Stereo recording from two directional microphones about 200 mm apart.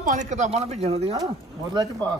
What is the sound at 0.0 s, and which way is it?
Speech, 40° right (ahead or behind).